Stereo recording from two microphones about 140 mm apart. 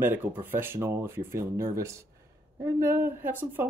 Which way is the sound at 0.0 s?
15° right (ahead or behind).